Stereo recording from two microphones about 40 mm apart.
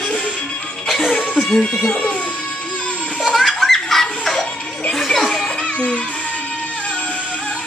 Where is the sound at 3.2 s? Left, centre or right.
Centre.